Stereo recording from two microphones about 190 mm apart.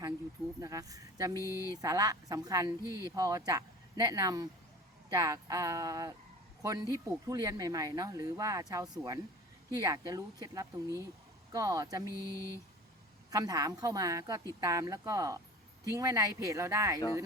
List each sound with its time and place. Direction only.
0.6 s speech: 15° right (ahead or behind)
1.4 s speech: 15° left (ahead or behind)
1.8 s speech: 20° right (ahead or behind)
13.3 s speech: 20° right (ahead or behind)